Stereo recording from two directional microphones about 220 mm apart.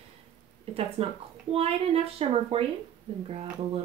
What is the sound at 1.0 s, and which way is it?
A woman's voice, 25° right (ahead or behind).